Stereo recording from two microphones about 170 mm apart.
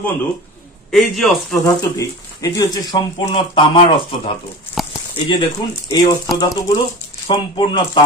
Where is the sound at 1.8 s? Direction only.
20° left (ahead or behind).